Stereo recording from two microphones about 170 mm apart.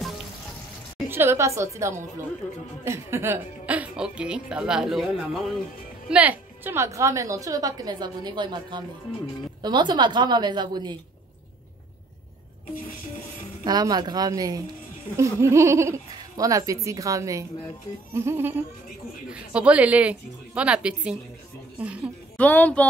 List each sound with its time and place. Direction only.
1.0 s a woman's voice: 15° right (ahead or behind)
2.4 s speech: 10° left (ahead or behind)
2.8 s speech: 15° right (ahead or behind)
6.0 s a woman's voice: 10° right (ahead or behind); by 11.0 s 25° right (ahead or behind)
13.7 s a woman's voice: 25° right (ahead or behind); by 22.1 s 5° right (ahead or behind)
22.4 s speech: 10° left (ahead or behind)